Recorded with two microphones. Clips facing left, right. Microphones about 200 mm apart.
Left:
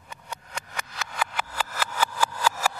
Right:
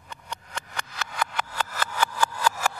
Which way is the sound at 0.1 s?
5° left (ahead or behind).